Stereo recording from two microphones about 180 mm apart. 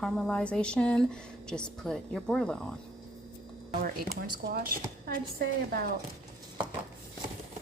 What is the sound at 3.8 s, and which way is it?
A woman's voice, 55° right (ahead or behind).